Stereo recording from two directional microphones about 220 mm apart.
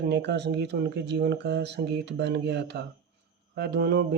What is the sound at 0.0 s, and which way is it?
Speech, 50° right (ahead or behind).